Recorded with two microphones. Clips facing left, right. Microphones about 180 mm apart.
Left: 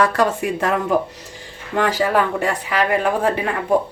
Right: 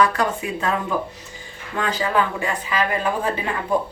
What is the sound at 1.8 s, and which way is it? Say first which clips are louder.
Speech: left 4 dB; 75° left (ahead or behind).